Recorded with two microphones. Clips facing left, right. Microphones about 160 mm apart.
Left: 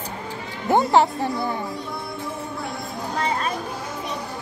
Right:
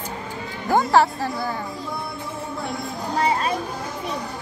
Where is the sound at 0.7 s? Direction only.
20° left (ahead or behind).